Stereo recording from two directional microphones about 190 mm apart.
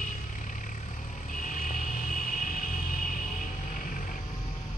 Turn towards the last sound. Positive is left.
turn(degrees=45)  # may be behind; listen again after turning